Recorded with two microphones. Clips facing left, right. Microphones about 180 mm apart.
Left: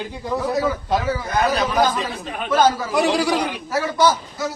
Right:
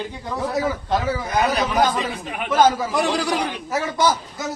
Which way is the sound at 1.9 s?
15° right (ahead or behind).